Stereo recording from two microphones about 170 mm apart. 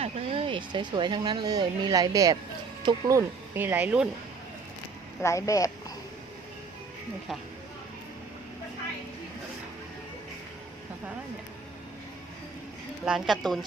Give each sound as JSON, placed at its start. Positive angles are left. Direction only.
{"t": 0.0, "sound": "speech", "side_deg": -35}
{"t": 5.2, "sound": "speech", "side_deg": 20}
{"t": 13.1, "sound": "speech", "side_deg": 0}